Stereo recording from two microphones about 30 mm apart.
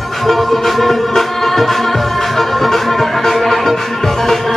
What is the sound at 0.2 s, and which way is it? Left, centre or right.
Music, centre.